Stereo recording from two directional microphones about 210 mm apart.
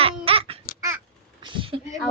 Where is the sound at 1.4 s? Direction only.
25° right (ahead or behind).